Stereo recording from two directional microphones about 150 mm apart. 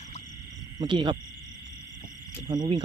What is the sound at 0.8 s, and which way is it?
Speech, 35° right (ahead or behind).